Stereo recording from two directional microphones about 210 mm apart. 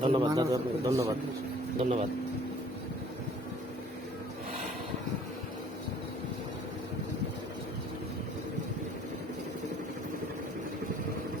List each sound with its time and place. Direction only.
0.0 s a man's voice: 25° right (ahead or behind)
1.8 s speech: 30° right (ahead or behind)